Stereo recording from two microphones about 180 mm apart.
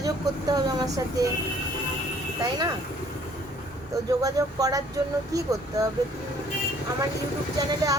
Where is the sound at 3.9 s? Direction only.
20° right (ahead or behind).